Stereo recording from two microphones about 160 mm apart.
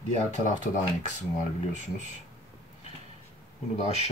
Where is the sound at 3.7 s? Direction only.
40° left (ahead or behind).